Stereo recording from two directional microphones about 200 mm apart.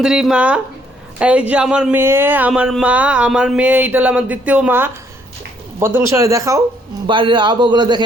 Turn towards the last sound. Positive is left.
turn(degrees=-20)  # may be behind; listen again after turning